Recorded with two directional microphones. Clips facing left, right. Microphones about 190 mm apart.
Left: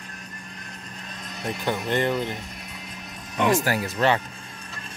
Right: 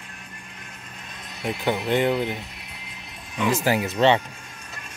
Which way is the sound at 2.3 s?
40° left (ahead or behind).